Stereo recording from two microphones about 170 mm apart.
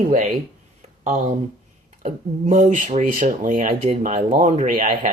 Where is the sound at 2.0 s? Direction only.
45° right (ahead or behind).